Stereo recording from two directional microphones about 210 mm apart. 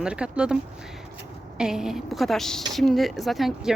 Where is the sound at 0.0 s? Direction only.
5° right (ahead or behind).